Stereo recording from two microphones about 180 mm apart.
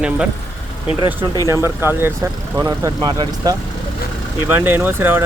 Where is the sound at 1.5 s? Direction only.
15° right (ahead or behind).